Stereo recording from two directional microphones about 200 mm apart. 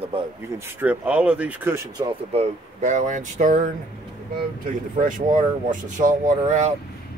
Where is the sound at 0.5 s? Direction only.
10° right (ahead or behind).